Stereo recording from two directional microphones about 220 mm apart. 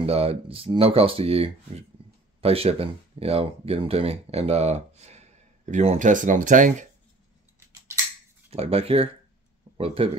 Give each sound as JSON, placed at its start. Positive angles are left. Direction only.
{"t": 0.0, "sound": "speech", "side_deg": -25}
{"t": 8.5, "sound": "speech", "side_deg": -25}